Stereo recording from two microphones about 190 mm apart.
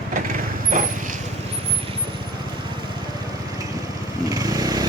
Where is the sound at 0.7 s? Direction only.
45° right (ahead or behind).